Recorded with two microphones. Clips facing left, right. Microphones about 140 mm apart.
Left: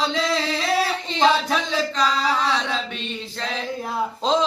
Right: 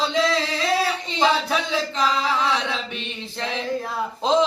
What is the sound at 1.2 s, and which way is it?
Singing, 10° right (ahead or behind).